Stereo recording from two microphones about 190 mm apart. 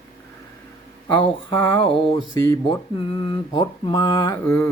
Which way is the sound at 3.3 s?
20° left (ahead or behind).